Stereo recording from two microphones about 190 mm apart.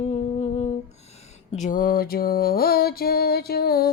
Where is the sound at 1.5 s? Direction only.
40° left (ahead or behind).